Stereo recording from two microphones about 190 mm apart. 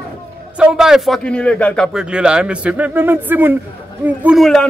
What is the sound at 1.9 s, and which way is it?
A man's voice, 5° right (ahead or behind).